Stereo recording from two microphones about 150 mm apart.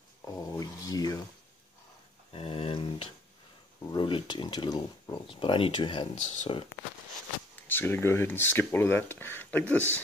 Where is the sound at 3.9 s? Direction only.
35° left (ahead or behind).